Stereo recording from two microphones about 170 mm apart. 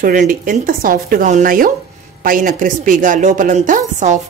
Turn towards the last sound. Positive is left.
turn(degrees=-45)  # may be behind; listen again after turning